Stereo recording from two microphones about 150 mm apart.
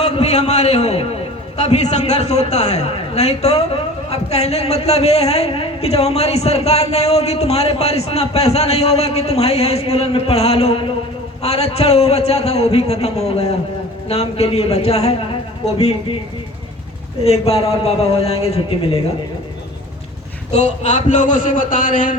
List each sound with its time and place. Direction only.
0.0 s a man's voice: 45° left (ahead or behind)
17.2 s a man's voice: 45° left (ahead or behind)
20.5 s a man's voice: 50° left (ahead or behind)